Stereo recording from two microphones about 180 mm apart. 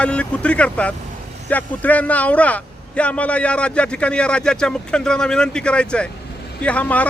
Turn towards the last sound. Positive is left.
turn(degrees=10)  # may be behind; listen again after turning